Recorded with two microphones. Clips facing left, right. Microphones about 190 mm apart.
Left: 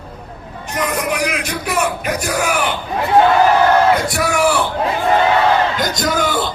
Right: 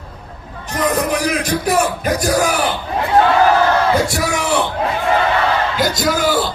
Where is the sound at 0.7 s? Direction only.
35° right (ahead or behind).